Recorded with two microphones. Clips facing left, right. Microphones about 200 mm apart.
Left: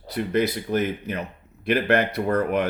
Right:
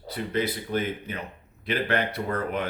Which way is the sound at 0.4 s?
40° left (ahead or behind).